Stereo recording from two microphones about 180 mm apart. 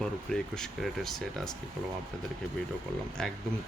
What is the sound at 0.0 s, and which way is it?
Speech, 5° left (ahead or behind).